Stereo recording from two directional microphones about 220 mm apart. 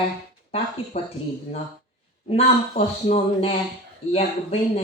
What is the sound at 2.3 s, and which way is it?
Speech, 30° left (ahead or behind).